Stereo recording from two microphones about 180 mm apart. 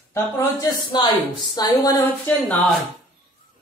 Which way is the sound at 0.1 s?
20° left (ahead or behind).